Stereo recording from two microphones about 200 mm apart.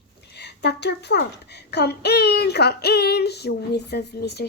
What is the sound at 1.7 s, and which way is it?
Child singing, 55° left (ahead or behind).